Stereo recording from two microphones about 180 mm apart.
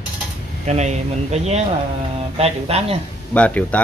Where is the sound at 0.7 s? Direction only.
40° right (ahead or behind).